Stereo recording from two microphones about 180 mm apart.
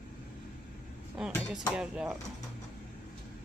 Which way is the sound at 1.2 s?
5° right (ahead or behind).